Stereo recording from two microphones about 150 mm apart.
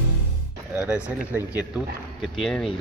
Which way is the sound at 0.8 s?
10° right (ahead or behind).